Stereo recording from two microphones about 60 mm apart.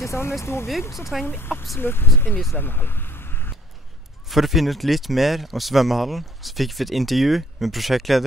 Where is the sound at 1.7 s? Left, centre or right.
Left.